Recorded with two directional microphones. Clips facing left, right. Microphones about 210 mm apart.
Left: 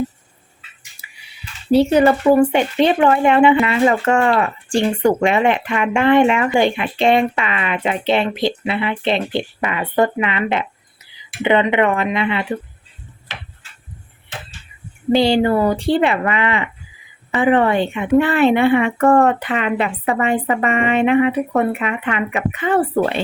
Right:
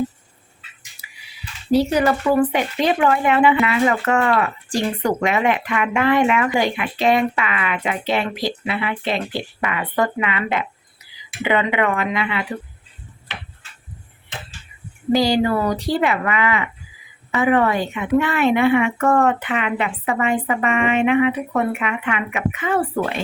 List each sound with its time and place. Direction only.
1.7 s speech: 25° left (ahead or behind)
15.1 s a woman's voice: 25° left (ahead or behind)